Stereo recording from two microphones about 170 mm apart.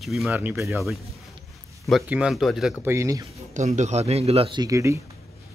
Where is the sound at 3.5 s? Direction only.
45° right (ahead or behind); by 5.0 s 20° right (ahead or behind).